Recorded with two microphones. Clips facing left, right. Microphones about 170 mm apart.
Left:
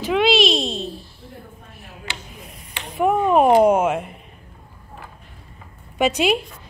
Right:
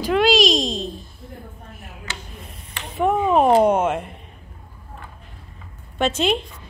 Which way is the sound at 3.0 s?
5° left (ahead or behind).